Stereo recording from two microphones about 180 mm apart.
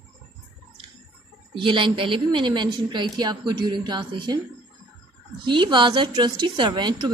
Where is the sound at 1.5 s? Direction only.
30° right (ahead or behind).